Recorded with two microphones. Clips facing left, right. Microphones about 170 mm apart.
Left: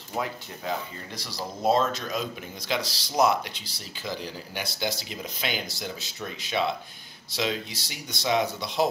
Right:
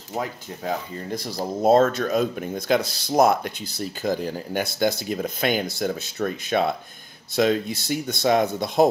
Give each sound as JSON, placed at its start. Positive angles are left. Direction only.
{"t": 0.2, "sound": "speech", "side_deg": -50}